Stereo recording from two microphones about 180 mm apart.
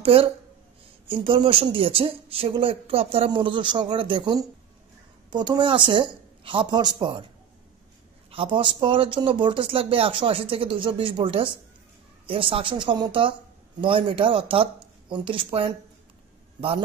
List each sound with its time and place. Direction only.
0.0 s speech: 30° right (ahead or behind)
8.3 s speech: 30° right (ahead or behind)